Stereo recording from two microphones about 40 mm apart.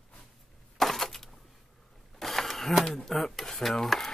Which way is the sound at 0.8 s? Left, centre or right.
Centre.